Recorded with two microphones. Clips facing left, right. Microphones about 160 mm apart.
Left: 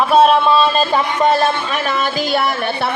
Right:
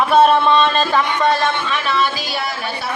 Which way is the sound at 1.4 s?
45° left (ahead or behind).